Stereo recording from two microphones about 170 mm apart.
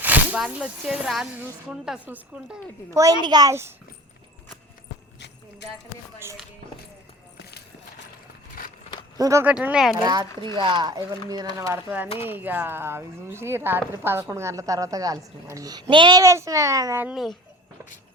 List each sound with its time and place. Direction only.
0.0 s speech: 10° right (ahead or behind)
8.6 s a sound: 55° left (ahead or behind)
9.1 s speech: 20° right (ahead or behind)
10.0 s speech: 25° right (ahead or behind)